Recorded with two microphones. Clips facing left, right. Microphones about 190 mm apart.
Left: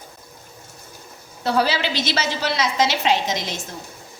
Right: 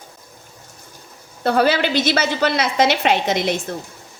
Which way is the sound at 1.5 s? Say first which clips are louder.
Right 4 dB; 55° right (ahead or behind).